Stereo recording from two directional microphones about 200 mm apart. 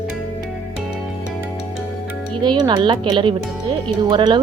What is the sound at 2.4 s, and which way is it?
Speech, 20° right (ahead or behind).